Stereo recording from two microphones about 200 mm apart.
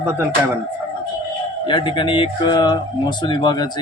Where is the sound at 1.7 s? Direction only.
25° left (ahead or behind).